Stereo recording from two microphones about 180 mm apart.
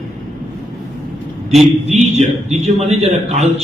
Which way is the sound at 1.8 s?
35° right (ahead or behind).